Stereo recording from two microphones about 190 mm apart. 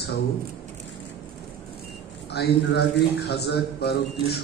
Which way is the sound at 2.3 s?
60° left (ahead or behind).